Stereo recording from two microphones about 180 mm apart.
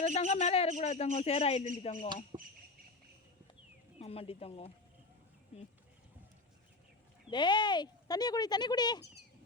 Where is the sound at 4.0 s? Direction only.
35° left (ahead or behind).